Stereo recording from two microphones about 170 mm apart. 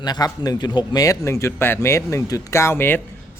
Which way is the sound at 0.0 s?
25° left (ahead or behind).